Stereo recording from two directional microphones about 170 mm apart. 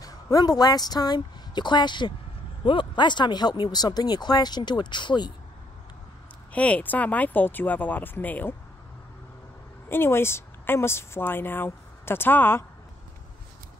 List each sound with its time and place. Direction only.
0.0 s a woman's voice: 20° left (ahead or behind)
6.5 s speech: 10° left (ahead or behind)
9.8 s a woman's voice: 15° left (ahead or behind)